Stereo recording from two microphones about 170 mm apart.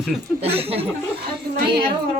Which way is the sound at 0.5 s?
35° right (ahead or behind).